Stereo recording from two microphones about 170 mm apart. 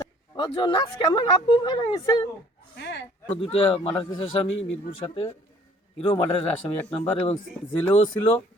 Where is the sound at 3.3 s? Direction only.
30° left (ahead or behind).